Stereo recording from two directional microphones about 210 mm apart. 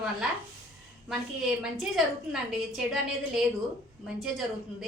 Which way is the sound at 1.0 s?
5° right (ahead or behind).